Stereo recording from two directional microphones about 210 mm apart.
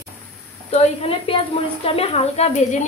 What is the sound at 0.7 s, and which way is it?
A woman's voice, 30° left (ahead or behind).